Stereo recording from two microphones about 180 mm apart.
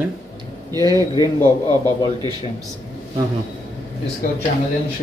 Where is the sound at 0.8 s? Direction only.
20° right (ahead or behind).